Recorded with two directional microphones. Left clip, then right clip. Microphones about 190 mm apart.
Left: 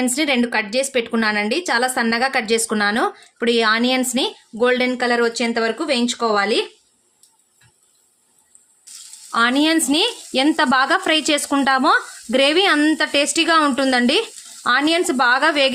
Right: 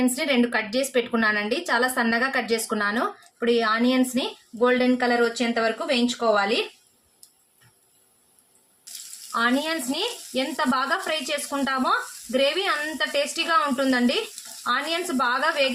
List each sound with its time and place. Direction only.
0.0 s a woman's voice: 50° left (ahead or behind)
9.3 s speech: 60° left (ahead or behind)